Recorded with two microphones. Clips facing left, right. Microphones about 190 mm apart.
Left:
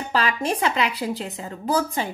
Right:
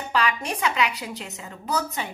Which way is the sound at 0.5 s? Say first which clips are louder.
Left 2 dB; 30° left (ahead or behind).